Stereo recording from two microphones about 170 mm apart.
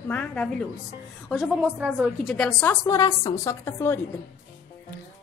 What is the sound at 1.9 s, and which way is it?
Speech, centre (ahead or behind).